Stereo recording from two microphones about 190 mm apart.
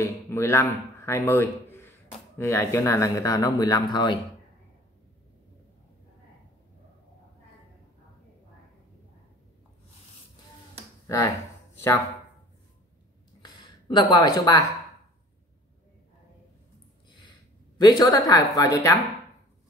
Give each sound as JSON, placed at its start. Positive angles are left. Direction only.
{"t": 0.0, "sound": "a man's voice", "side_deg": 15}
{"t": 11.1, "sound": "speech", "side_deg": 15}
{"t": 13.8, "sound": "a woman's voice", "side_deg": 20}
{"t": 17.7, "sound": "a woman's voice", "side_deg": 20}